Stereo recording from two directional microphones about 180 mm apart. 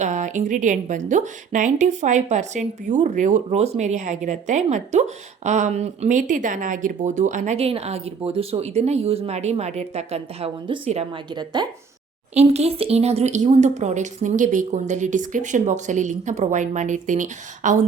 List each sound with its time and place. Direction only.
0.0 s a woman's voice: 45° right (ahead or behind)
11.3 s speech: 25° right (ahead or behind)
12.3 s a woman's voice: 35° right (ahead or behind)